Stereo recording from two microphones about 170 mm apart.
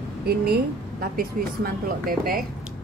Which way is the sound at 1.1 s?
60° right (ahead or behind).